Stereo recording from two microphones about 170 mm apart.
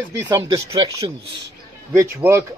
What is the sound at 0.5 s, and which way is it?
Speech, 20° right (ahead or behind).